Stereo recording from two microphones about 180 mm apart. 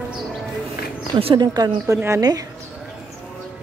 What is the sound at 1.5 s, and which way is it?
Speech, 20° right (ahead or behind).